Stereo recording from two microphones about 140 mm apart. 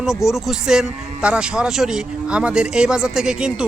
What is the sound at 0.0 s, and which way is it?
A man's voice, 5° right (ahead or behind).